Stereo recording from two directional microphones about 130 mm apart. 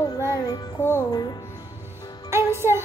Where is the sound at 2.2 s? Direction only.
20° right (ahead or behind).